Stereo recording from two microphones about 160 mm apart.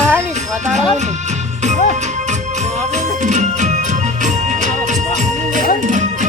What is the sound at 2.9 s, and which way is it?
Music, 50° right (ahead or behind).